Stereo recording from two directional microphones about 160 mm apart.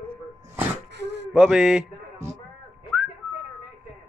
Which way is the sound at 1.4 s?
5° right (ahead or behind).